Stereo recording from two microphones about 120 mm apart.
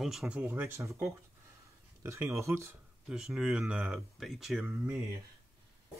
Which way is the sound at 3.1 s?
5° right (ahead or behind).